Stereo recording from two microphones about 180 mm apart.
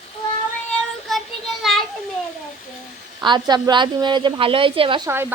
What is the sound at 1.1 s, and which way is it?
Child singing, centre (ahead or behind).